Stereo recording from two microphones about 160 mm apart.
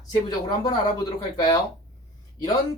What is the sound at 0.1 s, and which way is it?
Speech, 25° left (ahead or behind).